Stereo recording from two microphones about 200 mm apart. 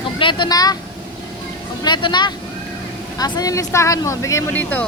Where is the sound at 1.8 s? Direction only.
20° left (ahead or behind).